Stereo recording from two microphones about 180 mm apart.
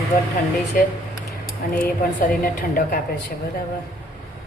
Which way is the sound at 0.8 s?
55° left (ahead or behind).